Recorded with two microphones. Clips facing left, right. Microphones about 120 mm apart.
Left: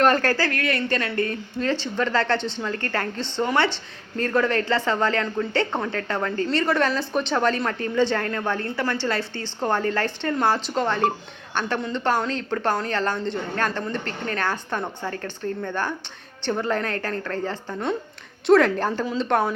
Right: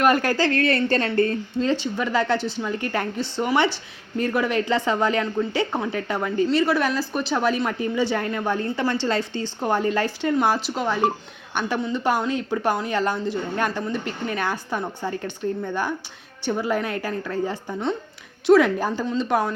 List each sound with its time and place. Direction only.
0.0 s speech: 15° right (ahead or behind); by 1.6 s 30° right (ahead or behind)
1.6 s speech: 15° right (ahead or behind)